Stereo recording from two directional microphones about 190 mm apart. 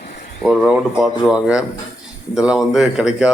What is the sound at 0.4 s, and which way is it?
Speech, 5° left (ahead or behind).